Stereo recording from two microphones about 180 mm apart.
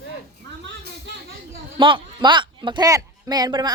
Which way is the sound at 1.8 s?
25° right (ahead or behind).